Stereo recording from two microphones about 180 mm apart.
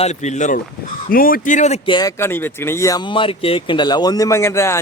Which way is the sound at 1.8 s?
25° left (ahead or behind).